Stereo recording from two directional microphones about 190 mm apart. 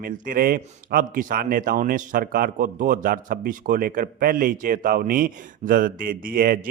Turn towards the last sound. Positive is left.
turn(degrees=-50)  # may be behind; listen again after turning